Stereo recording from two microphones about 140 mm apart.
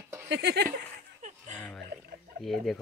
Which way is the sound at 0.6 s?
80° right.